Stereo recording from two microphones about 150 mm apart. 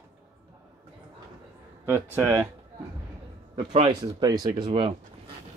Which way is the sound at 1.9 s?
15° right (ahead or behind).